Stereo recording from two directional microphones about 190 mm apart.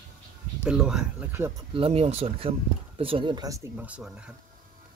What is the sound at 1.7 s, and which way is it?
Speech, 30° right (ahead or behind).